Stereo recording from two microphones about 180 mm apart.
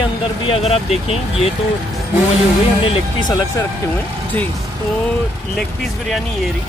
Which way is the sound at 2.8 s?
25° left (ahead or behind).